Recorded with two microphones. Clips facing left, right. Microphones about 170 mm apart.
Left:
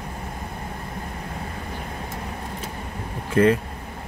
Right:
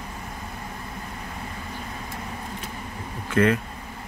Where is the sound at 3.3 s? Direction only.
30° left (ahead or behind).